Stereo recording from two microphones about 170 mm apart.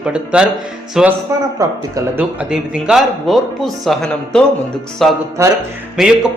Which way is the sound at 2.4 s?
5° right (ahead or behind).